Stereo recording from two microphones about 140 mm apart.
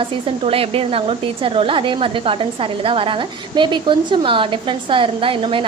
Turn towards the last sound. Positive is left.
turn(degrees=-40)  # may be behind; listen again after turning